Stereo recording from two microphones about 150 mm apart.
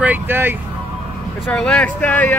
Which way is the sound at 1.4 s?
5° left (ahead or behind).